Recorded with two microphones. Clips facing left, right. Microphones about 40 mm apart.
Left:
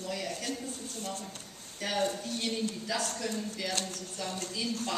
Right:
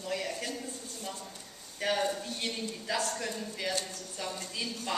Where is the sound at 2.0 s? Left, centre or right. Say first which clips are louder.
Left 1 dB; centre.